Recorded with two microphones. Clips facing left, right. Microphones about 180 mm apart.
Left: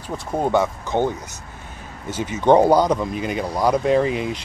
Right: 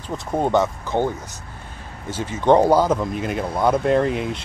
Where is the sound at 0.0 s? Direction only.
10° left (ahead or behind).